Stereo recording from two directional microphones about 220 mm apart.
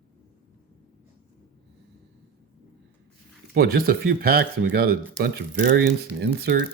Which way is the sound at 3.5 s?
45° right (ahead or behind).